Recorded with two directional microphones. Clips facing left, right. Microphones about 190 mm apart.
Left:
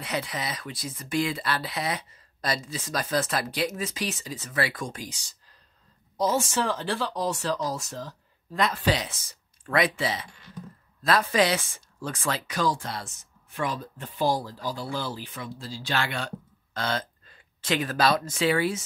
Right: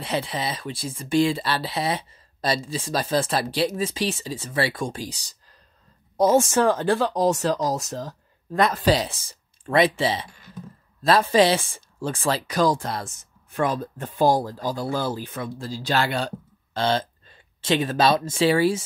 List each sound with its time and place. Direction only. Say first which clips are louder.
0.0 s speech: right 4 dB; 30° right (ahead or behind)
6.1 s speech: right 7 dB; 50° right (ahead or behind); by 18.9 s 30° right (ahead or behind)